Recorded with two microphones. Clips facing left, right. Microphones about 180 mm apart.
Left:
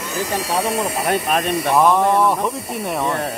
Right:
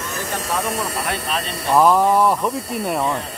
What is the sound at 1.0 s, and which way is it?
Speech, 50° left (ahead or behind).